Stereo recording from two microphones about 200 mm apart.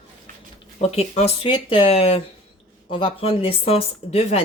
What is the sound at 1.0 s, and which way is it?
Speech, 30° left (ahead or behind).